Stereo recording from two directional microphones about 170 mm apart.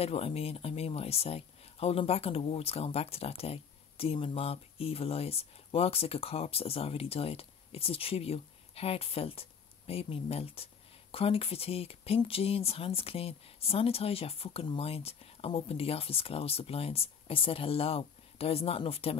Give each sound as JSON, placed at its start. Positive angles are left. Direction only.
{"t": 0.0, "sound": "speech", "side_deg": 35}